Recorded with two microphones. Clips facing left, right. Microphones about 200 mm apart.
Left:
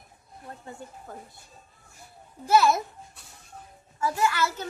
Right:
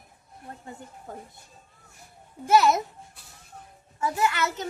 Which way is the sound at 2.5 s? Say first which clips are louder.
Right 1 dB; 20° right (ahead or behind).